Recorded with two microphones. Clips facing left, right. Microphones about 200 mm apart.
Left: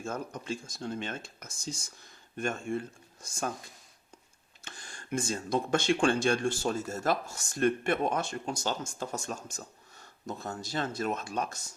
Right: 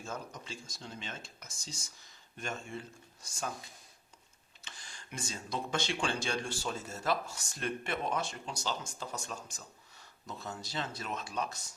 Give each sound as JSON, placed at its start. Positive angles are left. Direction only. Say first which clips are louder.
{"t": 0.0, "sound": "speech", "louder": "left 6 dB", "side_deg": 50}
{"t": 4.6, "sound": "speech", "louder": "left 5 dB", "side_deg": 50}